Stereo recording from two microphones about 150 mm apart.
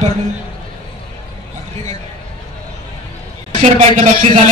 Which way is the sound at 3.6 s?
55° right (ahead or behind).